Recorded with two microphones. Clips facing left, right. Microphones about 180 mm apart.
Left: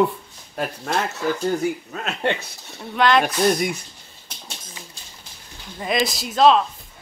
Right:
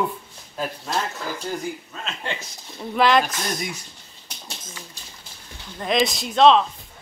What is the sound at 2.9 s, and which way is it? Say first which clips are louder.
Speech: even; centre (ahead or behind).